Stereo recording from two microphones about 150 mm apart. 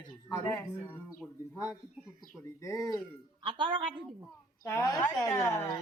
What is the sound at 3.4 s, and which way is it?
Speech, 35° right (ahead or behind).